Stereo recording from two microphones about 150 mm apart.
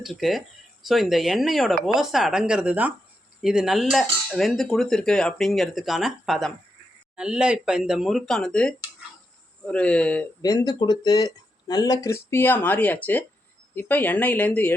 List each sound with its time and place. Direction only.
0.0 s cutlery: centre (ahead or behind)
9.6 s speech: 5° left (ahead or behind)
10.4 s speech: 25° left (ahead or behind)